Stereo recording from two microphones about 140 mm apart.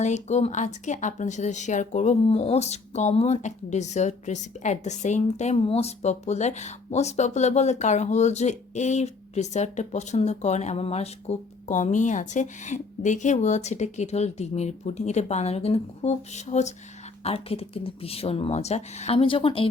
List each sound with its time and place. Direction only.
0.0 s a woman's voice: 55° left (ahead or behind); by 19.6 s 40° left (ahead or behind)